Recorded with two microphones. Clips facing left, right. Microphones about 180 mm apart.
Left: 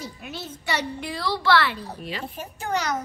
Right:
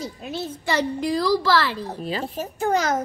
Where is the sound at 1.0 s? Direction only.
35° right (ahead or behind).